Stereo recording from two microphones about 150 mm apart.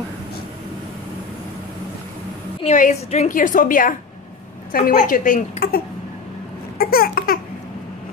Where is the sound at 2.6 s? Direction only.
50° left (ahead or behind).